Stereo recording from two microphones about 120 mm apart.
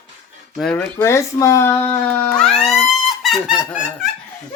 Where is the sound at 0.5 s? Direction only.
Centre (ahead or behind).